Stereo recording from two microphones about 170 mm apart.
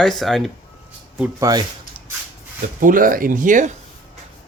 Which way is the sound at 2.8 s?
55° right (ahead or behind).